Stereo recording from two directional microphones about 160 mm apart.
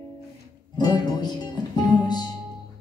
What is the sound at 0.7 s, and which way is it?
Music, 25° left (ahead or behind).